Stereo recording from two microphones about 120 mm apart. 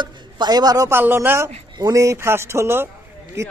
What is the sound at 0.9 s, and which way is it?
A man's voice, 20° right (ahead or behind).